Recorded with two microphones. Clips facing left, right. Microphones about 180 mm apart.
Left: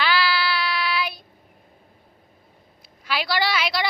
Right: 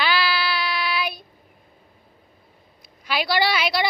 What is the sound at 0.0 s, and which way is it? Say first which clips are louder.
Child singing: even; 15° right (ahead or behind).